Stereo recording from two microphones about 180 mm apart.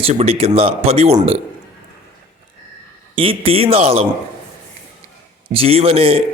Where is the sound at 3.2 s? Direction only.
30° right (ahead or behind).